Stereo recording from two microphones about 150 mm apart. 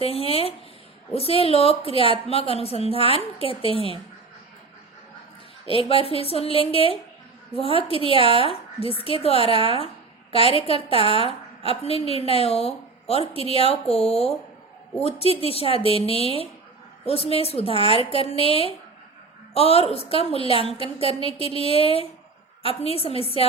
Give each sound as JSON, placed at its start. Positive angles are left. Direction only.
{"t": 0.0, "sound": "a woman's voice", "side_deg": 40}
{"t": 5.6, "sound": "a woman's voice", "side_deg": 40}